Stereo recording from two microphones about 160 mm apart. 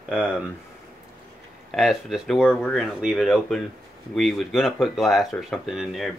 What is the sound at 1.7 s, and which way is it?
Speech, centre (ahead or behind).